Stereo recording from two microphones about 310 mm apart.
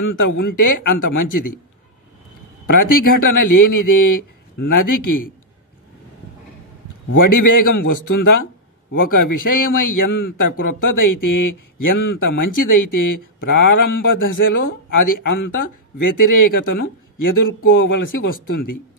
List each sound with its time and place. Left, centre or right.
0.0 s speech: left
2.7 s speech: left
7.2 s speech: left
10.1 s a man's voice: left
10.6 s speech: left